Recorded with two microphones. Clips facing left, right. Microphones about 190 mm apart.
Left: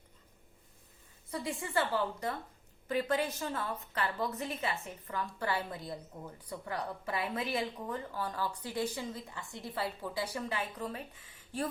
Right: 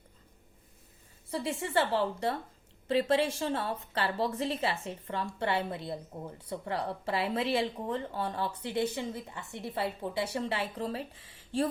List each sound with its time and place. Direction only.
1.3 s a woman's voice: 25° right (ahead or behind)